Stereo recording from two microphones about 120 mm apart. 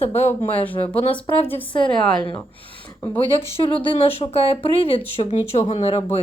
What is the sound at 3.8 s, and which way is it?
Speech, 50° left (ahead or behind).